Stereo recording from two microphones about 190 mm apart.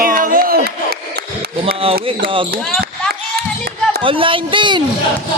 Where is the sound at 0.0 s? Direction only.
45° right (ahead or behind).